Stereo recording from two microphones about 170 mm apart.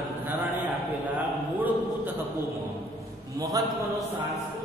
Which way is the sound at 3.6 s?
20° right (ahead or behind).